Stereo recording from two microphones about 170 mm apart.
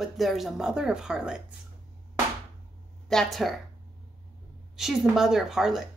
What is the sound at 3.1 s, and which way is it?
Speech, centre (ahead or behind).